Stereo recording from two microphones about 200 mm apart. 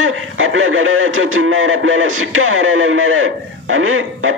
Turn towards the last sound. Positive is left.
turn(degrees=-90)